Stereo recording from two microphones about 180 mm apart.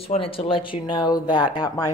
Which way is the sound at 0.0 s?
30° left (ahead or behind).